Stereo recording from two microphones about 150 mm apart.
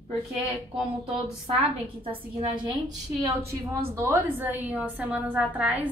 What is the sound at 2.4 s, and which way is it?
Speech, 30° right (ahead or behind).